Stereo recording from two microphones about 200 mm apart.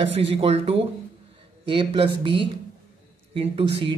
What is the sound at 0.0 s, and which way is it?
Speech, 30° right (ahead or behind).